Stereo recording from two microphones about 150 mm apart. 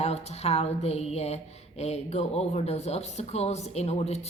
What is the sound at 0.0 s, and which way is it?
Speech, 45° left (ahead or behind).